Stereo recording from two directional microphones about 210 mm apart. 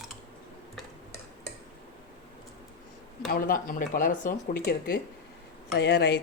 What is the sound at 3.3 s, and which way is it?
Speech, 40° left (ahead or behind).